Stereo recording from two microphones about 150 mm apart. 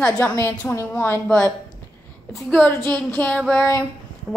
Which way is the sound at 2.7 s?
15° left (ahead or behind).